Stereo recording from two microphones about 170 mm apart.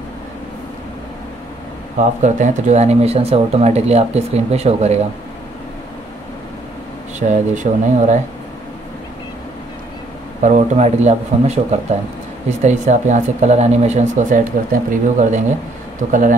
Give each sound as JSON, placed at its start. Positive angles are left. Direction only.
{"t": 2.2, "sound": "speech", "side_deg": -45}
{"t": 7.2, "sound": "speech", "side_deg": -45}
{"t": 10.4, "sound": "speech", "side_deg": -45}